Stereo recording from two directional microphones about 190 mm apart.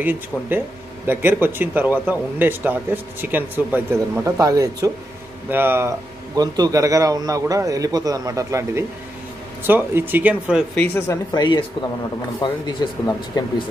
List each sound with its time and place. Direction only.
0.0 s a man's voice: 10° right (ahead or behind)
10.8 s speech: 15° left (ahead or behind)
12.4 s speech: 25° left (ahead or behind)